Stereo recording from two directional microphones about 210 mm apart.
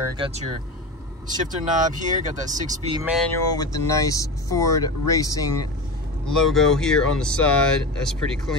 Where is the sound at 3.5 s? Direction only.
15° left (ahead or behind).